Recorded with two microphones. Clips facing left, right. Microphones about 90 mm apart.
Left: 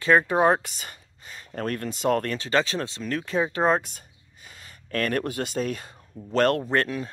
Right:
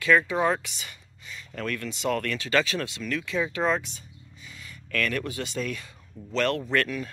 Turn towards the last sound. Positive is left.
turn(degrees=35)  # may be behind; listen again after turning